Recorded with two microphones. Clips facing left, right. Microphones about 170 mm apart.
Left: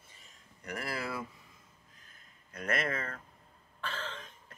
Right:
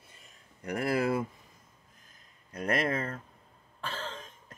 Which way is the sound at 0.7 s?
50° right (ahead or behind).